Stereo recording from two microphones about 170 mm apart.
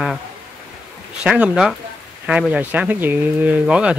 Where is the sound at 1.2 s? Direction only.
5° right (ahead or behind).